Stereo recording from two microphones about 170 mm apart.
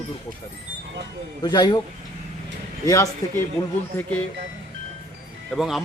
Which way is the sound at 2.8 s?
20° left (ahead or behind).